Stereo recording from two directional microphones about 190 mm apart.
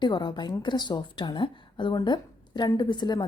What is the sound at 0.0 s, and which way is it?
A woman's voice, 25° left (ahead or behind).